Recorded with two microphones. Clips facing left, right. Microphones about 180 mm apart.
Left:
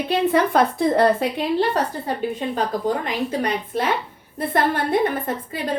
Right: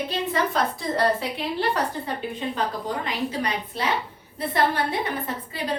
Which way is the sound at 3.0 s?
50° left (ahead or behind).